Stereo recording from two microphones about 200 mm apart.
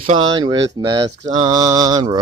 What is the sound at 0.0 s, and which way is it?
Mantra, 25° right (ahead or behind).